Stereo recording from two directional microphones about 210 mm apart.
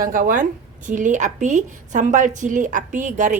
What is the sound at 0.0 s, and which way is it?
A woman's voice, 40° right (ahead or behind).